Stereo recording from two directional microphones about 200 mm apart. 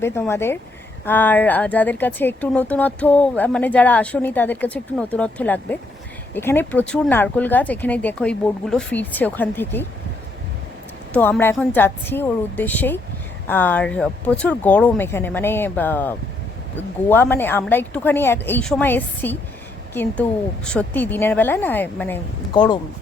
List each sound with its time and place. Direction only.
0.0 s speech: 10° left (ahead or behind)
11.1 s speech: 10° left (ahead or behind)
22.5 s speech: 20° left (ahead or behind)